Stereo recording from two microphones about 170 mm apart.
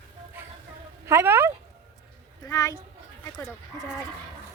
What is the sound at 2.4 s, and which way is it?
Speech, 20° left (ahead or behind).